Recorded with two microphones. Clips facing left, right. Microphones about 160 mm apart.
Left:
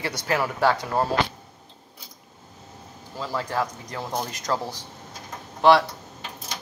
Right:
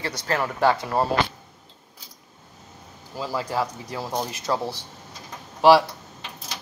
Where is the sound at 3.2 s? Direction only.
10° right (ahead or behind).